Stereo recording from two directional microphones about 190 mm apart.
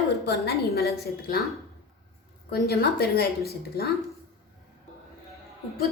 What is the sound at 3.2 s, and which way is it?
Speech, 55° left (ahead or behind).